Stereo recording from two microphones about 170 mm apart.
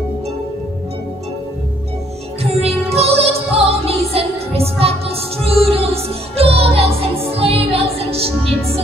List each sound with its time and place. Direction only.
2.4 s music: 35° right (ahead or behind)